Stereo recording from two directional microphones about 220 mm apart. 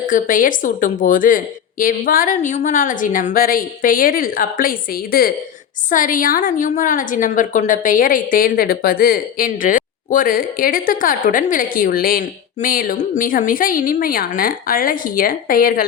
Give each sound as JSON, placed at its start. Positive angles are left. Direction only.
{"t": 0.0, "sound": "a woman's voice", "side_deg": 35}